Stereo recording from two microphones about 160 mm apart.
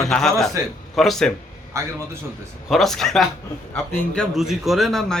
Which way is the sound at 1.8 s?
15° right (ahead or behind).